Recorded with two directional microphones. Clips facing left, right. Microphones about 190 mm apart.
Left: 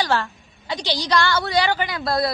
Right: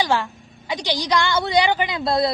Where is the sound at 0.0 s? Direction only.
15° right (ahead or behind).